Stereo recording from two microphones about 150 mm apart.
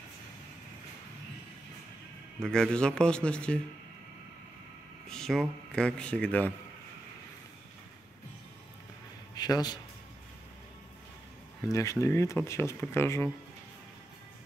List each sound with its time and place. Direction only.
2.4 s speech: 5° left (ahead or behind)
5.0 s a man's voice: 5° left (ahead or behind)
9.3 s a sound: 25° left (ahead or behind)
11.7 s speech: 20° left (ahead or behind)